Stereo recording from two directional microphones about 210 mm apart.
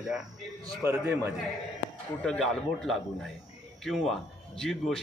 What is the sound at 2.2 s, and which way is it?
Speech, centre (ahead or behind).